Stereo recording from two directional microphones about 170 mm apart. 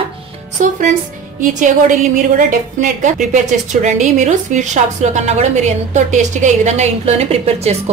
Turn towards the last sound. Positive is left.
turn(degrees=-40)  # may be behind; listen again after turning